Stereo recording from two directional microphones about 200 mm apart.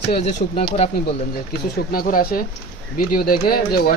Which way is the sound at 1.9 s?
45° left (ahead or behind).